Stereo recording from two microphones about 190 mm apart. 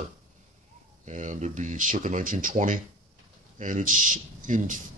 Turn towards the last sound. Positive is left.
turn(degrees=-45)  # may be behind; listen again after turning